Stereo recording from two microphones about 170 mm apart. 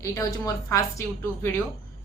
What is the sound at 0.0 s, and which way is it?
A woman's voice, 20° left (ahead or behind).